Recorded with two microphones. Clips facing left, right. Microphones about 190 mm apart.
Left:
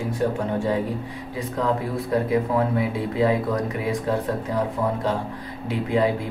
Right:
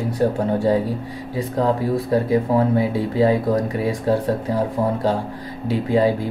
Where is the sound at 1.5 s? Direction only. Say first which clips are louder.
Right 5 dB; 30° right (ahead or behind).